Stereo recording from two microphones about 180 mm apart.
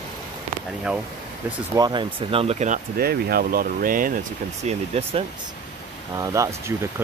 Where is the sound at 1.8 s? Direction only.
25° right (ahead or behind).